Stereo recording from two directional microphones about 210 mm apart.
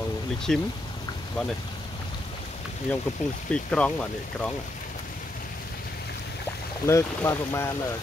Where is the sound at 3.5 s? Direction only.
5° left (ahead or behind).